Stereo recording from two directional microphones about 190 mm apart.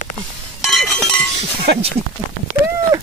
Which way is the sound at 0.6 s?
Centre (ahead or behind).